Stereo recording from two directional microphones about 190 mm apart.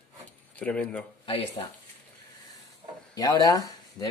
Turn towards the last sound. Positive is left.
turn(degrees=20)  # may be behind; listen again after turning